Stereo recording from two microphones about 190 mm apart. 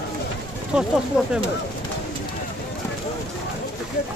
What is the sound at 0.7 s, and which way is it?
Speech, 5° right (ahead or behind).